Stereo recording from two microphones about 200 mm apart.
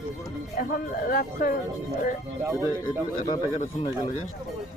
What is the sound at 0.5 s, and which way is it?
Speech, 45° left (ahead or behind).